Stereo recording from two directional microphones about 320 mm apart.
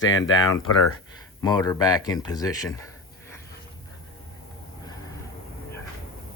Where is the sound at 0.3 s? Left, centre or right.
Left.